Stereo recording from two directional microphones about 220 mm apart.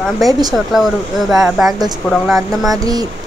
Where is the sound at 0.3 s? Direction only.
15° right (ahead or behind).